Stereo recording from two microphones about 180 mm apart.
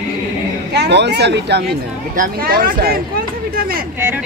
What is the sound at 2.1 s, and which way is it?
Speech, 55° right (ahead or behind).